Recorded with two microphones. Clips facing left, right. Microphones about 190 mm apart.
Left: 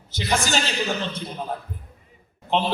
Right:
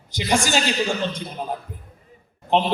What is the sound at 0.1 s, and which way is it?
Speech, 15° right (ahead or behind).